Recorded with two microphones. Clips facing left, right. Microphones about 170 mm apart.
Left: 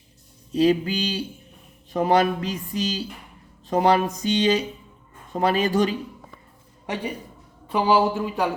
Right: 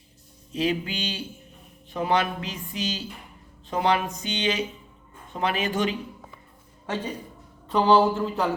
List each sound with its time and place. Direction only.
0.5 s speech: 35° left (ahead or behind)
6.8 s a man's voice: 15° left (ahead or behind)